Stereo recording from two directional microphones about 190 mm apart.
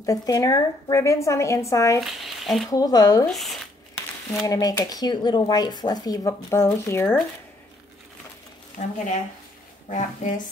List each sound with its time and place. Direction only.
0.0 s a woman's voice: 20° left (ahead or behind)
2.0 s speech: centre (ahead or behind)
2.7 s speech: 20° left (ahead or behind)
3.3 s speech: centre (ahead or behind)
4.5 s speech: 20° left (ahead or behind)
8.8 s speech: 40° left (ahead or behind)